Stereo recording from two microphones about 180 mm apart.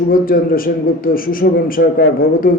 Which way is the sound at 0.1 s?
55° left (ahead or behind).